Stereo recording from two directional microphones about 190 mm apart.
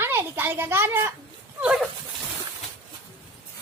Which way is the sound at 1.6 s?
5° right (ahead or behind).